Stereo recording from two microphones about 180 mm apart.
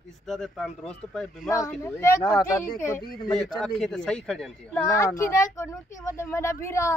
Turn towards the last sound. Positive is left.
turn(degrees=15)  # may be behind; listen again after turning